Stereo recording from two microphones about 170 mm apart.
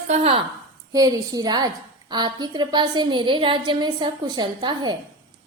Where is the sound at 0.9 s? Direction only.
20° right (ahead or behind).